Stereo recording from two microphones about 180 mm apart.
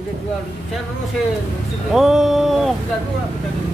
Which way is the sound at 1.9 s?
Centre (ahead or behind).